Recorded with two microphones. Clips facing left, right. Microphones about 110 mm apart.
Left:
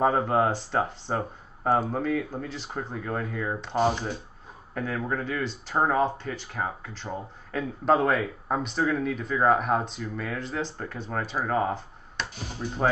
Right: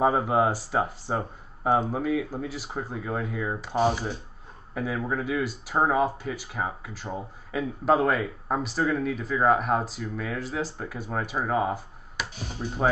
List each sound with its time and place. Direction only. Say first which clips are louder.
0.0 s speech: even; 5° right (ahead or behind)